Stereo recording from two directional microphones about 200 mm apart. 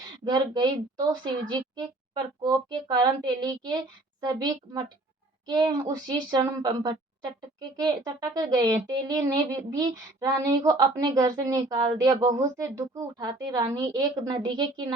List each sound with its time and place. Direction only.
0.3 s speech: 20° right (ahead or behind)